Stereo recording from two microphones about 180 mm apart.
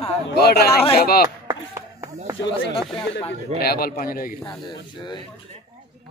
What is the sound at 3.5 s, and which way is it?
Speech, 55° left (ahead or behind).